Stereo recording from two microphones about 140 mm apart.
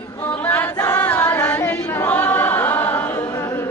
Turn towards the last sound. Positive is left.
turn(degrees=15)  # may be behind; listen again after turning